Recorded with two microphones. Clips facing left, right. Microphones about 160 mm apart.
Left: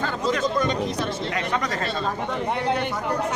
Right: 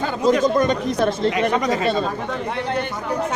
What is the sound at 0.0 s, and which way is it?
Chatter, 15° right (ahead or behind).